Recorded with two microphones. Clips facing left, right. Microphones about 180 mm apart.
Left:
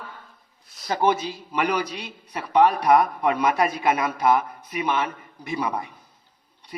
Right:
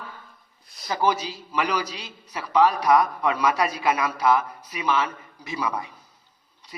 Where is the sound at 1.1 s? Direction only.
55° left (ahead or behind).